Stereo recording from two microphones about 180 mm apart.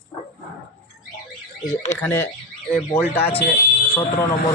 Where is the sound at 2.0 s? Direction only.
10° left (ahead or behind).